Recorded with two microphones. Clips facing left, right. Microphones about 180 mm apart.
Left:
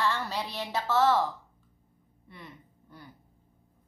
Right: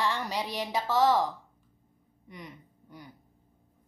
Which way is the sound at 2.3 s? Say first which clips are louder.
Right 3 dB; 15° right (ahead or behind).